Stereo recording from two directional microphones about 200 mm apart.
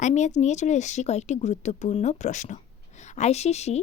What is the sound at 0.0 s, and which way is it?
A woman's voice, 35° left (ahead or behind).